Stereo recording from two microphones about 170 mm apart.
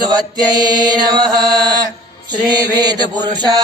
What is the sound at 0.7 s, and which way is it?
Chant, 25° right (ahead or behind).